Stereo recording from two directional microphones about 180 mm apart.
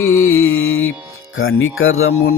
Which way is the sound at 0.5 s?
90° left.